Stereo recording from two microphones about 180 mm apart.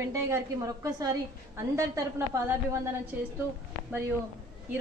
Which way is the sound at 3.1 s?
10° right (ahead or behind).